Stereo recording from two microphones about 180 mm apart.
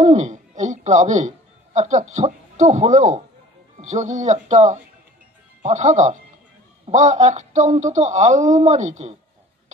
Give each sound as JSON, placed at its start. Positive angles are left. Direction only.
{"t": 0.0, "sound": "a man's voice", "side_deg": -40}